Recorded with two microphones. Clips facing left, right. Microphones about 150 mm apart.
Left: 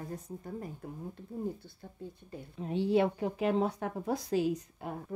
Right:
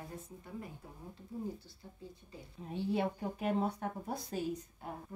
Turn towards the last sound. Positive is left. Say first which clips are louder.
# left 6 dB
turn(degrees=90)